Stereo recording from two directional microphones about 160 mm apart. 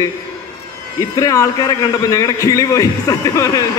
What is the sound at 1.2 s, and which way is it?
A man's voice, 20° left (ahead or behind).